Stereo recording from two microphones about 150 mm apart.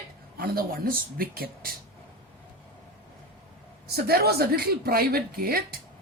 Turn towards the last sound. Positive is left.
turn(degrees=-85)